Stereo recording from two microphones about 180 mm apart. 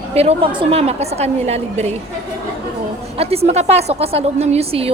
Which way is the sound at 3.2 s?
35° right (ahead or behind).